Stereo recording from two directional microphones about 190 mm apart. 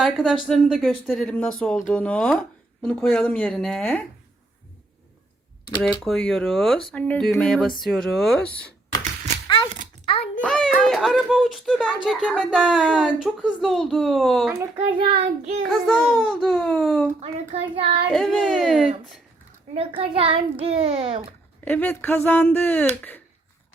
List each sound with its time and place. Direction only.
0.0 s speech: centre (ahead or behind)
6.1 s speech: centre (ahead or behind)
10.1 s a sound: 35° left (ahead or behind)
10.4 s speech: 5° left (ahead or behind)
14.6 s a child's voice: 25° right (ahead or behind)
15.6 s speech: centre (ahead or behind)
17.7 s a child's voice: 30° right (ahead or behind)
18.1 s speech: centre (ahead or behind)
19.7 s a child's voice: 30° right (ahead or behind)
21.6 s speech: 10° left (ahead or behind)